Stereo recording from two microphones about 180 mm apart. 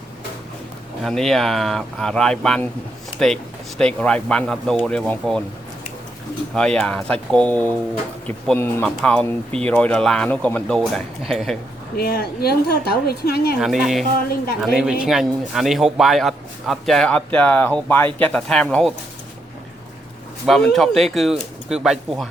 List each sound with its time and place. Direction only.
1.0 s a man's voice: centre (ahead or behind)
6.5 s a man's voice: 5° left (ahead or behind)
11.9 s a woman's voice: 60° left (ahead or behind)
13.6 s a man's voice: centre (ahead or behind)
20.5 s a man's voice: centre (ahead or behind)